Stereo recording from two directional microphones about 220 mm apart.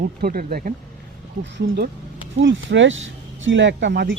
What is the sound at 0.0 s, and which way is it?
Speech, 40° right (ahead or behind).